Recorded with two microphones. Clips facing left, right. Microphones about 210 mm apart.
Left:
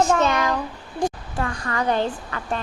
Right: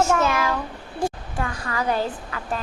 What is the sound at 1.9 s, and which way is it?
Speech, 5° right (ahead or behind).